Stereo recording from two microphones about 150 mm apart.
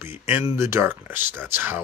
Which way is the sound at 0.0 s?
15° right (ahead or behind).